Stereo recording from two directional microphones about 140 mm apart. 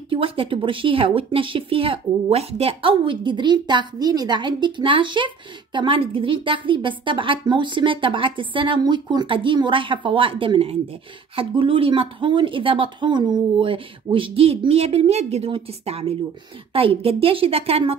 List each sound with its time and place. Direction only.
0.1 s speech: 40° right (ahead or behind)